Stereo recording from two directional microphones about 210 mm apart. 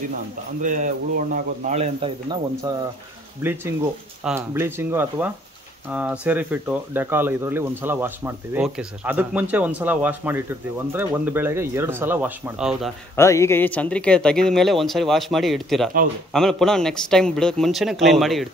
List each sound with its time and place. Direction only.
0.6 s speech: 40° right (ahead or behind)
4.2 s speech: 5° right (ahead or behind)
13.1 s speech: 15° left (ahead or behind)